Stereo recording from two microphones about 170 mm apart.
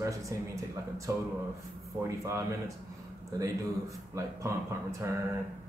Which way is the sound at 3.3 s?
20° right (ahead or behind).